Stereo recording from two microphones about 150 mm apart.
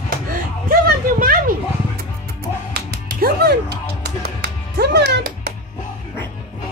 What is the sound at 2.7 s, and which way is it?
Music, 90° right.